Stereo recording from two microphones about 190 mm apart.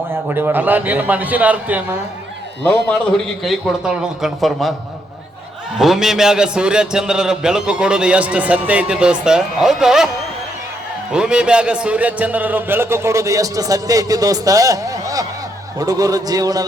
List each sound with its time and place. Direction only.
0.1 s a man's voice: 10° right (ahead or behind)
3.4 s a man's voice: centre (ahead or behind)
5.7 s a man's voice: centre (ahead or behind)
11.1 s a man's voice: 5° right (ahead or behind)